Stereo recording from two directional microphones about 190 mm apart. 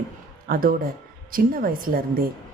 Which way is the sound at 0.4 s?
50° right (ahead or behind).